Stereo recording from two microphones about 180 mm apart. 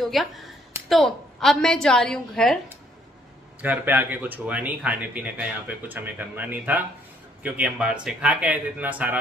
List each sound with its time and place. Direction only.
0.0 s a woman's voice: centre (ahead or behind)
3.6 s speech: 10° right (ahead or behind)